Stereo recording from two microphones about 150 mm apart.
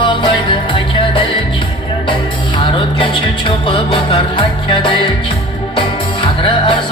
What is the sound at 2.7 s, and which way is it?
Music, 35° left (ahead or behind).